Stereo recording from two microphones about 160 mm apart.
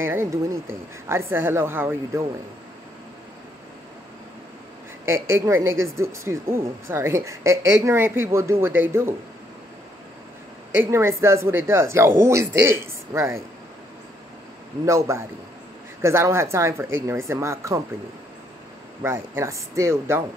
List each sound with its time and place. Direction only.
0.0 s a woman's voice: 15° right (ahead or behind)
5.0 s a woman's voice: 15° right (ahead or behind)
10.7 s a woman's voice: 15° right (ahead or behind)
14.9 s a woman's voice: 20° right (ahead or behind)
19.0 s a woman's voice: 15° right (ahead or behind)